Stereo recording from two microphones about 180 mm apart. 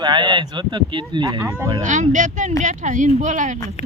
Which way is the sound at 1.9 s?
45° right (ahead or behind).